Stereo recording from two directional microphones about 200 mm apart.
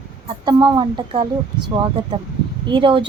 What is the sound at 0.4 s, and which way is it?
Speech, 20° right (ahead or behind).